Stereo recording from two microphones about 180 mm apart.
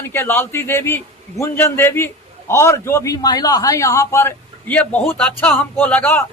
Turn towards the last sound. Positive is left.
turn(degrees=10)  # may be behind; listen again after turning